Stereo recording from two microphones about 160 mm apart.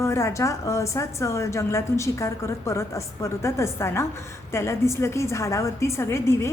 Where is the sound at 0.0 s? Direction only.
20° left (ahead or behind).